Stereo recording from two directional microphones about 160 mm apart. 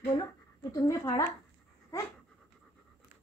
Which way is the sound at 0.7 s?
20° left (ahead or behind).